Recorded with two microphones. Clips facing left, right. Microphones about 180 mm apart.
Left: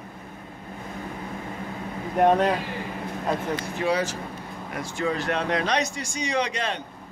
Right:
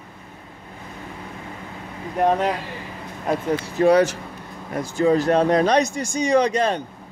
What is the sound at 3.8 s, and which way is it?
Speech, 60° right (ahead or behind).